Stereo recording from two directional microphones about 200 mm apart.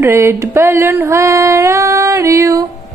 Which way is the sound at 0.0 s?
15° right (ahead or behind).